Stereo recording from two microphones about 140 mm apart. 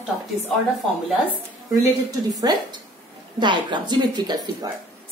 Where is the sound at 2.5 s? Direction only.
30° right (ahead or behind).